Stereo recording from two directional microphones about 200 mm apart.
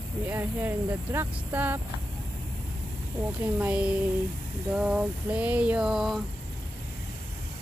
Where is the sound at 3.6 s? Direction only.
5° right (ahead or behind).